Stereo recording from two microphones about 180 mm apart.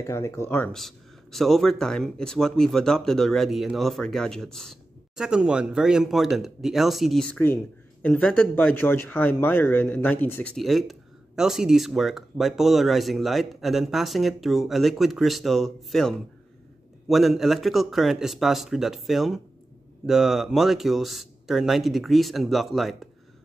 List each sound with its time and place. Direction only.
0.0 s speech: 15° left (ahead or behind)
0.7 s speech: centre (ahead or behind)